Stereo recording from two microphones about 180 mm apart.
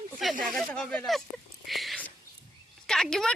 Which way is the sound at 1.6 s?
Centre (ahead or behind).